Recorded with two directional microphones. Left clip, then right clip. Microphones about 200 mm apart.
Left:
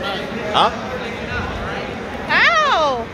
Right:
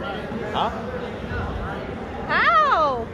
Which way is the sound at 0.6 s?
55° left (ahead or behind).